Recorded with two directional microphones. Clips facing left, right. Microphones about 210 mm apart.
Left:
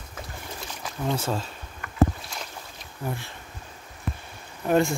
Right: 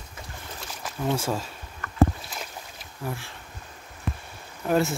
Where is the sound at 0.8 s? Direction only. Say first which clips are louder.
Right 1 dB; 5° right (ahead or behind).